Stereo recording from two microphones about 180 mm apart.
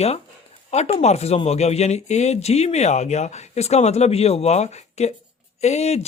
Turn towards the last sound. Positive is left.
turn(degrees=35)  # may be behind; listen again after turning